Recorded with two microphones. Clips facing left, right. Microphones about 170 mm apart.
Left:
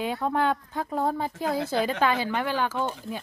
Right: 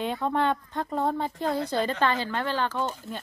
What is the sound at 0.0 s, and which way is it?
A woman's voice, 5° left (ahead or behind).